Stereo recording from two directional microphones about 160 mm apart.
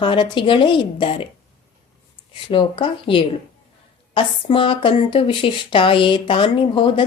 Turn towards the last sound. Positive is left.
turn(degrees=30)  # may be behind; listen again after turning